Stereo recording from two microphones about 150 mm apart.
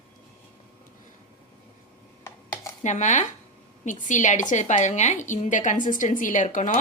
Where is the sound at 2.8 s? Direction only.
55° left (ahead or behind).